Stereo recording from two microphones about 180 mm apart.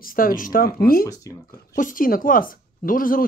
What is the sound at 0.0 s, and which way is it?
Speech, 50° left (ahead or behind).